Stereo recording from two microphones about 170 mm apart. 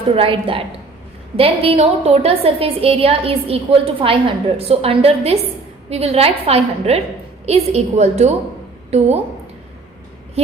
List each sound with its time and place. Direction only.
0.1 s a woman's voice: 35° right (ahead or behind)